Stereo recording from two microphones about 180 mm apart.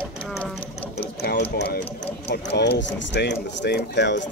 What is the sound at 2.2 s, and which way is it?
Speech, 65° left (ahead or behind).